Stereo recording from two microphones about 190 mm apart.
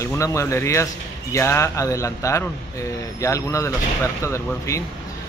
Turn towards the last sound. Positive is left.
turn(degrees=15)  # may be behind; listen again after turning